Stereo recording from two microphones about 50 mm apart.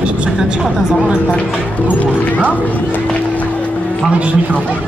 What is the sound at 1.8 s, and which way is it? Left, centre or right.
Speech, left.